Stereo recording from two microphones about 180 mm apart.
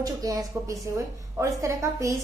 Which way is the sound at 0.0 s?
20° right (ahead or behind).